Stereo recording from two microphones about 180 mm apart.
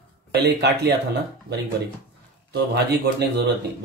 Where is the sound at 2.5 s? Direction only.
65° right (ahead or behind).